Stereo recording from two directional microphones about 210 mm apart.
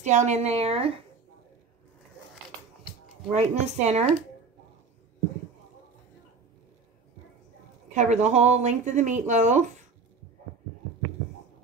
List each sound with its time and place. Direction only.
0.1 s speech: 35° right (ahead or behind)
3.3 s speech: 30° right (ahead or behind)
7.9 s speech: 35° right (ahead or behind)